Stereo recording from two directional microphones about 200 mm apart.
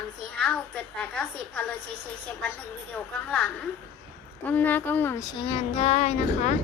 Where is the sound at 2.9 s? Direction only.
5° left (ahead or behind).